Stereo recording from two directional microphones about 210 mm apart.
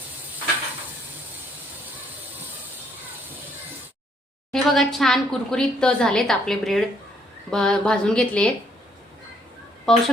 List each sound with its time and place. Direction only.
4.5 s a woman's voice: centre (ahead or behind)
9.9 s a woman's voice: centre (ahead or behind)